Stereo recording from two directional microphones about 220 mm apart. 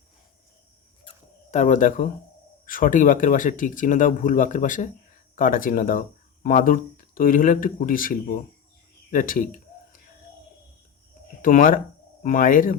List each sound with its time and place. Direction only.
1.0 s cricket: 30° left (ahead or behind)
2.6 s speech: 40° left (ahead or behind)
9.0 s a sound: 40° left (ahead or behind)
11.4 s speech: 40° left (ahead or behind)